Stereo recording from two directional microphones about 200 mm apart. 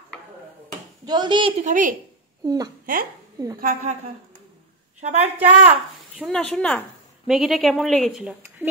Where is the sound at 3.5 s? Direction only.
45° right (ahead or behind).